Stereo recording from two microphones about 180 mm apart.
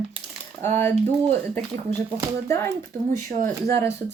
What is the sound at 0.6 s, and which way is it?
Speech, 10° left (ahead or behind).